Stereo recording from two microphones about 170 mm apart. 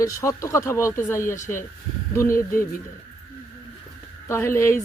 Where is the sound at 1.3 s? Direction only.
45° left (ahead or behind).